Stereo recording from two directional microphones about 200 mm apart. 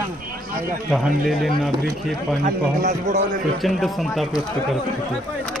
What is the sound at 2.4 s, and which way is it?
Speech, 40° right (ahead or behind).